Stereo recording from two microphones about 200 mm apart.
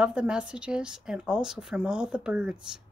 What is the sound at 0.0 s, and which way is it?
Speech, 5° right (ahead or behind).